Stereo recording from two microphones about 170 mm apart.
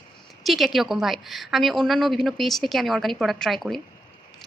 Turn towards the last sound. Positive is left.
turn(degrees=0)  # may be behind; listen again after turning